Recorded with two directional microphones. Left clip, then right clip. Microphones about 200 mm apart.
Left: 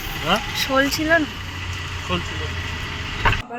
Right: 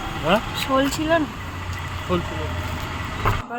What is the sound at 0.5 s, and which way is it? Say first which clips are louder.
Speech: left 2 dB; 15° right (ahead or behind).